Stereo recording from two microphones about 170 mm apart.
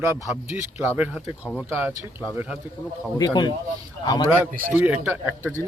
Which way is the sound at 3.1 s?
25° left (ahead or behind).